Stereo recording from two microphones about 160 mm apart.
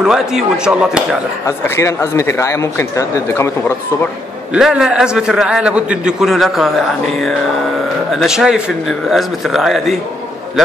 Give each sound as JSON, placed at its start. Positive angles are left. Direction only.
{"t": 0.0, "sound": "a man's voice", "side_deg": -5}
{"t": 1.8, "sound": "speech", "side_deg": 20}
{"t": 4.6, "sound": "a man's voice", "side_deg": -5}
{"t": 8.1, "sound": "a man's voice", "side_deg": 0}